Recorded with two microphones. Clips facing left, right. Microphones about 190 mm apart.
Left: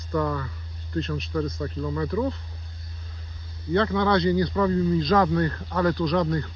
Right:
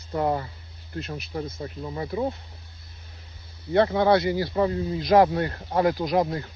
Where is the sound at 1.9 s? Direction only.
25° right (ahead or behind).